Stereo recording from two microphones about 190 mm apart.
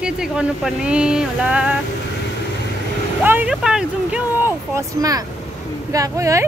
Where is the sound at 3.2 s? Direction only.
10° right (ahead or behind).